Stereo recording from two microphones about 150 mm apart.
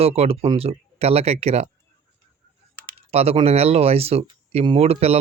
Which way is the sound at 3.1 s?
40° right (ahead or behind).